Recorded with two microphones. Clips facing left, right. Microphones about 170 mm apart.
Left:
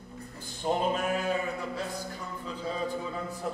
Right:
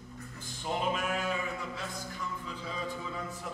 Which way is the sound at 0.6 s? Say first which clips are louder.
Left 4 dB; 40° left (ahead or behind).